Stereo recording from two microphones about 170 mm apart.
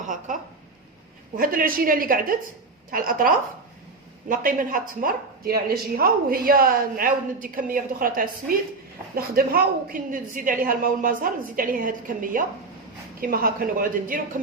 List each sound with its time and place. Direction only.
0.0 s a woman's voice: 50° right (ahead or behind)
1.4 s a woman's voice: 55° right (ahead or behind)